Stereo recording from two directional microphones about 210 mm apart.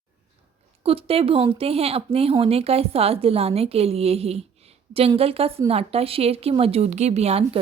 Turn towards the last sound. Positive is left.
turn(degrees=-30)  # may be behind; listen again after turning